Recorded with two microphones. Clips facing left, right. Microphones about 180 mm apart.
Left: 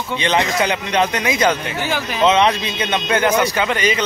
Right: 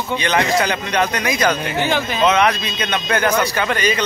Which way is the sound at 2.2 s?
25° left (ahead or behind).